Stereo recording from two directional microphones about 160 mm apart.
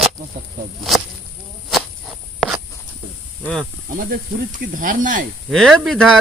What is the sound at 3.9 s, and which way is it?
Speech, 65° right (ahead or behind).